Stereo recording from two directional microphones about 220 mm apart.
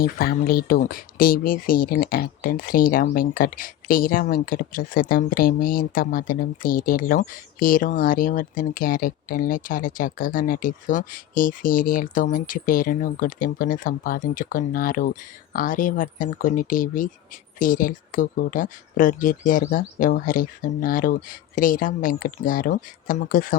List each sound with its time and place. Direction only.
0.0 s speech: 45° left (ahead or behind)